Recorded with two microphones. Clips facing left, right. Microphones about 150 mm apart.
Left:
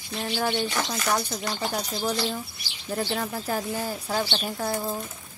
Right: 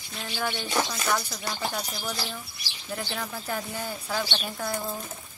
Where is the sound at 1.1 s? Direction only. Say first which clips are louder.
Left 3 dB; 25° left (ahead or behind).